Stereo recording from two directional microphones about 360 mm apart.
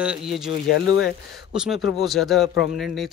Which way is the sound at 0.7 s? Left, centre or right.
Left.